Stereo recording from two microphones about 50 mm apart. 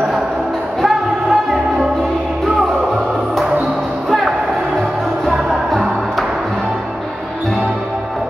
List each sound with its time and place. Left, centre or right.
0.8 s music: centre